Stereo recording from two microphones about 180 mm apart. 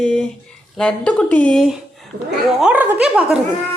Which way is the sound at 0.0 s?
5° left (ahead or behind).